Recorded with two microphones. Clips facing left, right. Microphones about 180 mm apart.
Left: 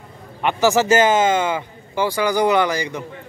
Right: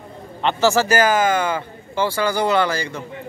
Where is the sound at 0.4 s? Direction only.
15° left (ahead or behind).